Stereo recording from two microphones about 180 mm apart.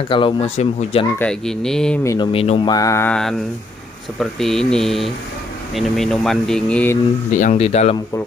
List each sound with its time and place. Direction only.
0.1 s speech: 30° left (ahead or behind)
1.2 s speech: 5° left (ahead or behind)
2.0 s speech: 30° left (ahead or behind)
2.7 s mantra: 15° left (ahead or behind)
4.2 s speech: centre (ahead or behind)
7.3 s speech: 40° left (ahead or behind)